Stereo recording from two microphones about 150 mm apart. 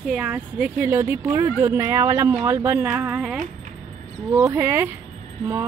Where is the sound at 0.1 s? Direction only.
5° right (ahead or behind).